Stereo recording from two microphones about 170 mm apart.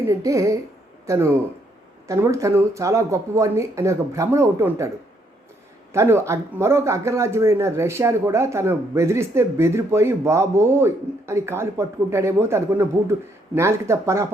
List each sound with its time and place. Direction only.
0.1 s speech: 20° right (ahead or behind)
5.9 s speech: 15° right (ahead or behind)